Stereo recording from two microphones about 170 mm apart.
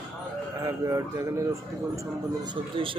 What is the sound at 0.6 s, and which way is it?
Speech, 20° right (ahead or behind).